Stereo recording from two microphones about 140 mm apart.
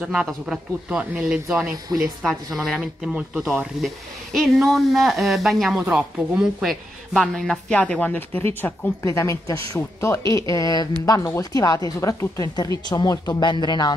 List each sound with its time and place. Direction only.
0.0 s speech: centre (ahead or behind); by 13.9 s 30° left (ahead or behind)